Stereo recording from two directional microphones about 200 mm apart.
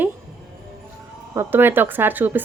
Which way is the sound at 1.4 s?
10° right (ahead or behind).